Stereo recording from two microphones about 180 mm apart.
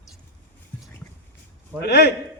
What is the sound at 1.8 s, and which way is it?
Speech, 70° left (ahead or behind).